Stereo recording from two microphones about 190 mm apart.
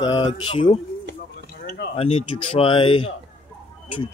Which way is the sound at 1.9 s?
30° left (ahead or behind).